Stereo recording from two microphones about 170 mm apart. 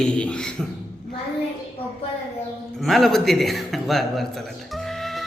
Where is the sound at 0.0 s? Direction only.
5° left (ahead or behind).